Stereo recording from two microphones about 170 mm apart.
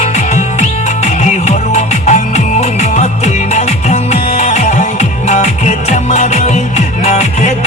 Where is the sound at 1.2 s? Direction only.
45° left (ahead or behind).